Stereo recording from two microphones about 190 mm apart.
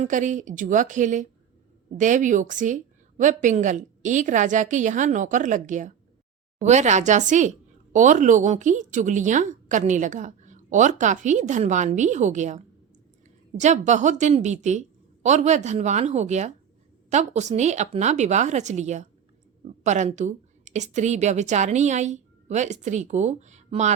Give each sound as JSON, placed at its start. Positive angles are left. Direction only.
{"t": 0.0, "sound": "a woman's voice", "side_deg": -40}